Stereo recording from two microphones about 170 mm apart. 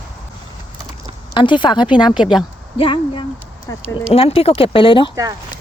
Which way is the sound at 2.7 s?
30° left (ahead or behind).